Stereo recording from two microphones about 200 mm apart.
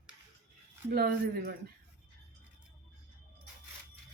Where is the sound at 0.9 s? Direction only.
50° right (ahead or behind).